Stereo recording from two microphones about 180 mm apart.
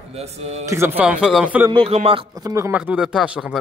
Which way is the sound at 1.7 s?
30° right (ahead or behind).